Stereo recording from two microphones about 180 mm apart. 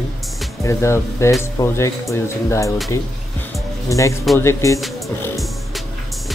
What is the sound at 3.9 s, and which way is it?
Speech, 15° left (ahead or behind).